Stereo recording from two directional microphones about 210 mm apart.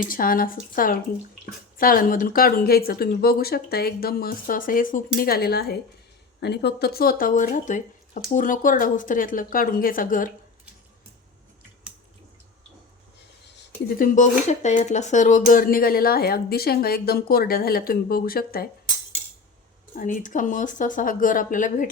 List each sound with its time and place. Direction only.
0.0 s speech: 40° left (ahead or behind)
13.6 s speech: 45° left (ahead or behind)
20.0 s speech: 40° left (ahead or behind)